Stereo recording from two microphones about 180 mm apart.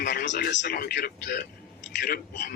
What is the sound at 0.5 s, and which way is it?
A man's voice, 65° left (ahead or behind).